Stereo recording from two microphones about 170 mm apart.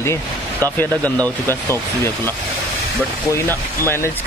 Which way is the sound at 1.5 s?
15° left (ahead or behind).